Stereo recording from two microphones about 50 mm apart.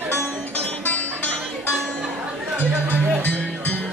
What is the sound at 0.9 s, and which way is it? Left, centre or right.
Music, left.